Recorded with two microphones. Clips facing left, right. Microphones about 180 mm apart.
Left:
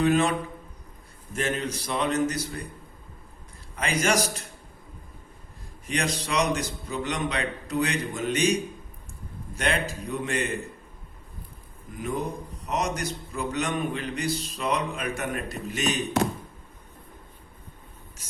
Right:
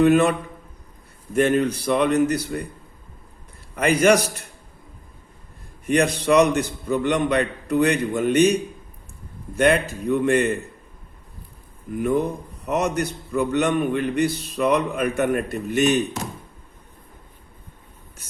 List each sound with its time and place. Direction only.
0.0 s speech: 60° right (ahead or behind)
1.4 s speech: 60° right (ahead or behind)
3.8 s speech: 60° right (ahead or behind)
5.8 s speech: 55° right (ahead or behind)
11.9 s speech: 60° right (ahead or behind)